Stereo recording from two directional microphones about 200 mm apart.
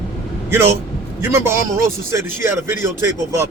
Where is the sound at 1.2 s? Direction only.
10° right (ahead or behind).